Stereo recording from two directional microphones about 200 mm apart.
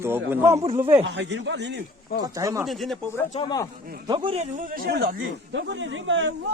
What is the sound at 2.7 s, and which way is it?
Speech, centre (ahead or behind).